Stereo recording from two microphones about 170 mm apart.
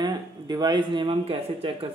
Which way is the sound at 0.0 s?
25° right (ahead or behind).